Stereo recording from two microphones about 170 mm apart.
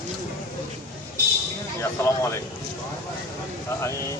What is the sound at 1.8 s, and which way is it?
Speech, 15° left (ahead or behind).